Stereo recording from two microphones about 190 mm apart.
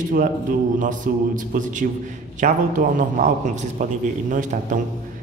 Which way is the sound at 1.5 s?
40° right (ahead or behind).